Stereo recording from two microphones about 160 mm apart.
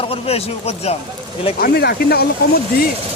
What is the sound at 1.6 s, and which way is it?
Speech, 85° left.